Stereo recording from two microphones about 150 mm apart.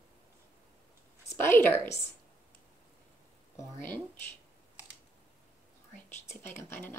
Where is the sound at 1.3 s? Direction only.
15° left (ahead or behind).